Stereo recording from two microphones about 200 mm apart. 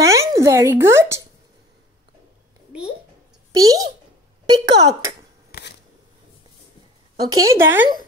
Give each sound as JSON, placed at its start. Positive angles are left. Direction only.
{"t": 0.0, "sound": "speech", "side_deg": -15}
{"t": 3.5, "sound": "speech", "side_deg": -20}
{"t": 5.5, "sound": "scissors", "side_deg": 55}
{"t": 7.2, "sound": "a woman's voice", "side_deg": -15}